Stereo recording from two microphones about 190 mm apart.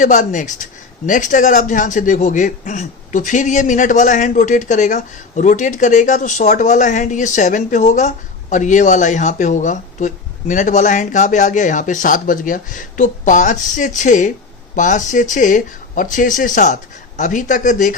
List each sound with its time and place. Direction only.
0.0 s speech: 40° left (ahead or behind)